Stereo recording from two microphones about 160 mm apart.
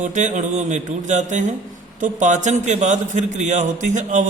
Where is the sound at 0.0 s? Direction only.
50° right (ahead or behind).